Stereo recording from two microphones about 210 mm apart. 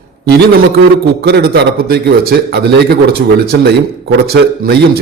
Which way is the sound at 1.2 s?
50° right (ahead or behind).